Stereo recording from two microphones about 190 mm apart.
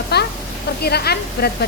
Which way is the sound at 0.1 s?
60° left (ahead or behind).